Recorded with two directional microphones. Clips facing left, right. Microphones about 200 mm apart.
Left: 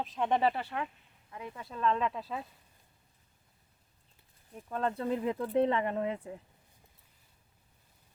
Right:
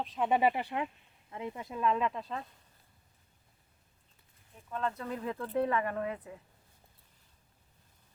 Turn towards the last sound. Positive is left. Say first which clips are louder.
# left 2 dB
turn(degrees=25)  # may be behind; listen again after turning